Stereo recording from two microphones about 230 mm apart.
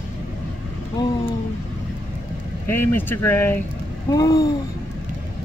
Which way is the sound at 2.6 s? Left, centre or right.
Centre.